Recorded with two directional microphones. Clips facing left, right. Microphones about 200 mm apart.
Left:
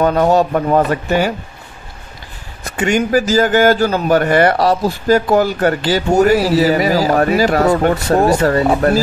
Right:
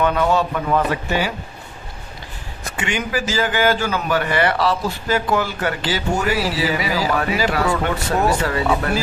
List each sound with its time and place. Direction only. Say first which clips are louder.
0.0 s speech: left 5 dB; 40° left (ahead or behind)
2.8 s a man's voice: left 9 dB; 45° left (ahead or behind)